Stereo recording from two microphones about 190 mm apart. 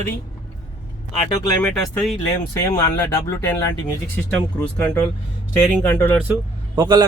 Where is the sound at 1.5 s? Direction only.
10° left (ahead or behind).